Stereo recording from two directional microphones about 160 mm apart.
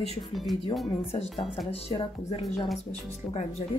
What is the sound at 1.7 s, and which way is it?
Speech, 40° left (ahead or behind).